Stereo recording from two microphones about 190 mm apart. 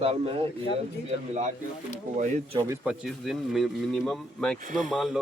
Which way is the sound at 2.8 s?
Centre (ahead or behind).